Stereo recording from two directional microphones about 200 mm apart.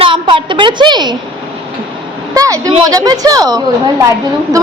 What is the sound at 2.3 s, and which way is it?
A woman's voice, 15° right (ahead or behind).